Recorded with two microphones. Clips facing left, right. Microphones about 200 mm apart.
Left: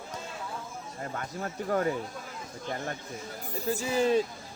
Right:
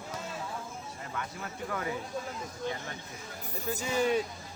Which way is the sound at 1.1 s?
40° left (ahead or behind).